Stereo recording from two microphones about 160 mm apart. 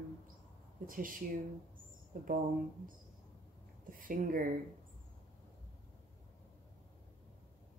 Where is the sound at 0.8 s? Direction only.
60° right (ahead or behind).